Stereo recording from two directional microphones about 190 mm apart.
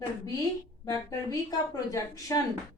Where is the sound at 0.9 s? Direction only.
20° left (ahead or behind).